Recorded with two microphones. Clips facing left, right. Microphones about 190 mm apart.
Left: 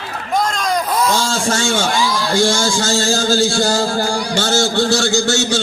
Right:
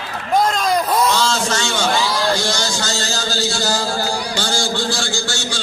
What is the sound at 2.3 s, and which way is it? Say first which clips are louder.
A man's voice: left 5 dB; 50° left (ahead or behind).